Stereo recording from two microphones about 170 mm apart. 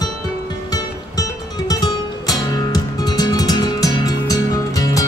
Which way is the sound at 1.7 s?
20° left (ahead or behind).